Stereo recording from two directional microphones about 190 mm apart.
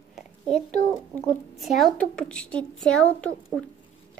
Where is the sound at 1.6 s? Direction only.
Centre (ahead or behind).